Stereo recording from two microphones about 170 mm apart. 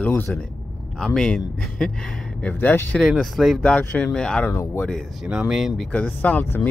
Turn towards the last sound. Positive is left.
turn(degrees=10)  # may be behind; listen again after turning